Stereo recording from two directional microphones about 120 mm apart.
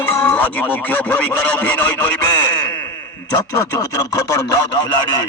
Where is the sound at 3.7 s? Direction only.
30° left (ahead or behind).